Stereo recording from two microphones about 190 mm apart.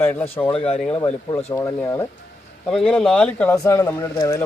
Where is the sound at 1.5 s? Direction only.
15° left (ahead or behind).